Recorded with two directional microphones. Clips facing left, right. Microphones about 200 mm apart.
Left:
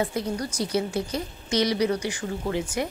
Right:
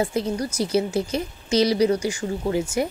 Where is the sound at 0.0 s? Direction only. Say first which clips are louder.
Right 3 dB; 25° right (ahead or behind).